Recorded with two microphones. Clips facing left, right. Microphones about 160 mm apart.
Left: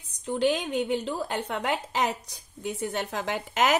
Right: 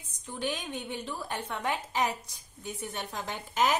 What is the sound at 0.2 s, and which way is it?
A woman's voice, 75° left (ahead or behind).